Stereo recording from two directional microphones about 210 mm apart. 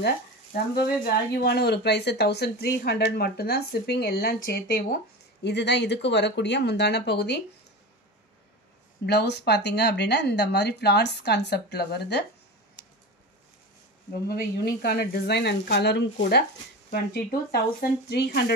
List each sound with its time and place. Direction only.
0.0 s speech: 50° left (ahead or behind)
9.0 s speech: 50° left (ahead or behind)
14.2 s speech: 45° left (ahead or behind)